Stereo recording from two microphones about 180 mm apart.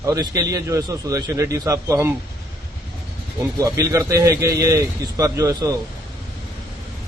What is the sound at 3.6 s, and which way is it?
A man's voice, 20° right (ahead or behind).